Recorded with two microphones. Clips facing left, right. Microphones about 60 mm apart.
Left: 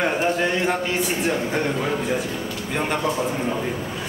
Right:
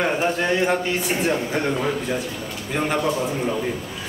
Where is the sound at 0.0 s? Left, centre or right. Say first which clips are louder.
Even; centre.